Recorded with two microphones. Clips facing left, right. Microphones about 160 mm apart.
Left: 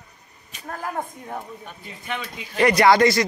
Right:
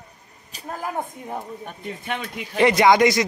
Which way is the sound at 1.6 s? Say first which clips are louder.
Right 5 dB; 55° right (ahead or behind).